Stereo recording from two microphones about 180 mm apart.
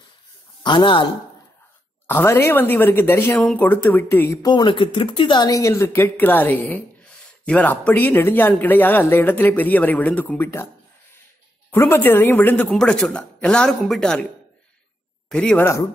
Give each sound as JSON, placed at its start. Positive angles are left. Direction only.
{"t": 0.7, "sound": "speech", "side_deg": 25}
{"t": 2.0, "sound": "speech", "side_deg": 10}
{"t": 11.9, "sound": "a woman's voice", "side_deg": 10}
{"t": 15.2, "sound": "speech", "side_deg": 5}